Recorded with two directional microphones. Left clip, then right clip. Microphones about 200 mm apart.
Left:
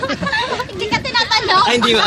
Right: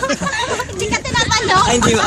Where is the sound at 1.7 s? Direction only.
30° left (ahead or behind).